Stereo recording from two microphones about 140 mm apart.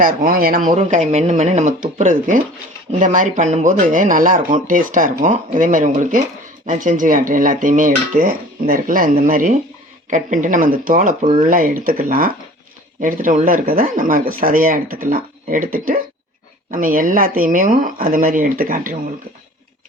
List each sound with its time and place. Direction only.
0.0 s speech: 85° right
0.8 s speech: 55° right (ahead or behind); by 9.0 s 85° right
9.2 s speech: 75° right (ahead or behind)
13.0 s speech: 75° right (ahead or behind)